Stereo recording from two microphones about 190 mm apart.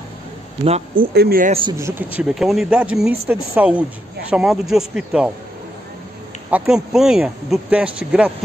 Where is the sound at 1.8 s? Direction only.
10° right (ahead or behind).